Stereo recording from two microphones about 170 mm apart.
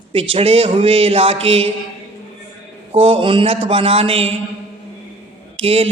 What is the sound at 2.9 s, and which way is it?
A man's voice, 30° right (ahead or behind).